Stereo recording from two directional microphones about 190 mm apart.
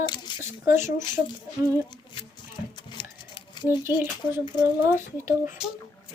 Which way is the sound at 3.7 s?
10° right (ahead or behind).